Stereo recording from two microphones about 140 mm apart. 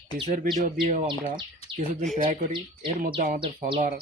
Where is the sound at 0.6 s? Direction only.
70° right (ahead or behind).